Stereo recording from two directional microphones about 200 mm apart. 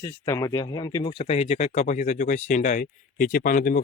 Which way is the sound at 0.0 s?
15° left (ahead or behind).